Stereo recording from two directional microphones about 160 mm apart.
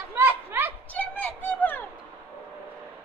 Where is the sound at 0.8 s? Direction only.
10° left (ahead or behind).